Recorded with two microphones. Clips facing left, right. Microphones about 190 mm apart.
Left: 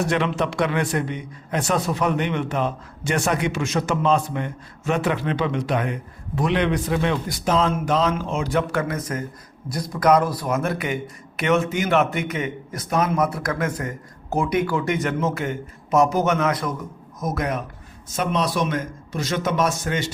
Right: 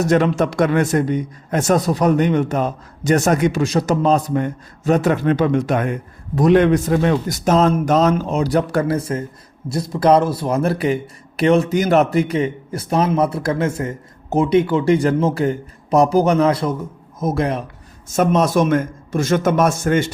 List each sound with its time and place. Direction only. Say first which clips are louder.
0.0 s a man's voice: right 6 dB; 45° right (ahead or behind)
18.2 s a man's voice: right 7 dB; 45° right (ahead or behind)